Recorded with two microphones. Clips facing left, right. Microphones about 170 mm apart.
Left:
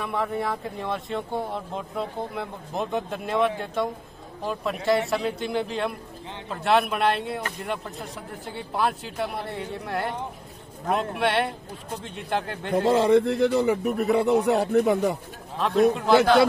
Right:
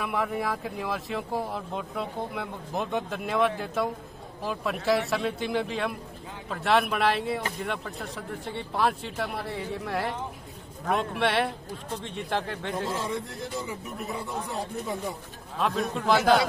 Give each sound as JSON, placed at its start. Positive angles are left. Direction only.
{"t": 0.0, "sound": "speech", "side_deg": -5}
{"t": 12.7, "sound": "speech", "side_deg": 65}